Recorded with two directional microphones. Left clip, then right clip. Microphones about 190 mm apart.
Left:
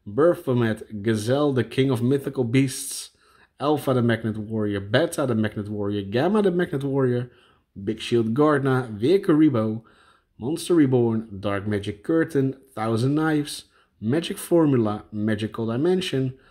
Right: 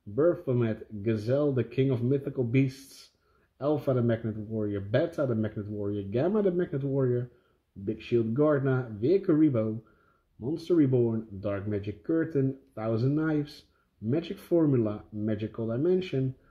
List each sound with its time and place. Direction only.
0.1 s speech: 25° left (ahead or behind)